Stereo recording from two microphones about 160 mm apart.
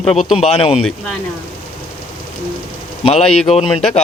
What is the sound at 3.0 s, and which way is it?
Speech, 40° left (ahead or behind).